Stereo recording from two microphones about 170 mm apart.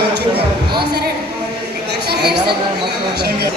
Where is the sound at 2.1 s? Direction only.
70° right (ahead or behind).